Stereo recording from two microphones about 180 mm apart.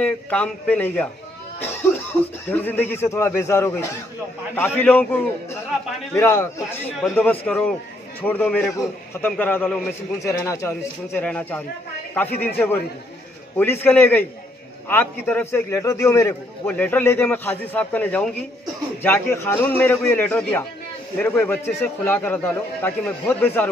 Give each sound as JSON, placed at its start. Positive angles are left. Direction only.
{"t": 0.0, "sound": "a man's voice", "side_deg": 5}
{"t": 2.4, "sound": "a man's voice", "side_deg": 10}